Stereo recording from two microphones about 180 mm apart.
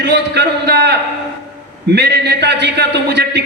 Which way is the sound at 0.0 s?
70° right (ahead or behind).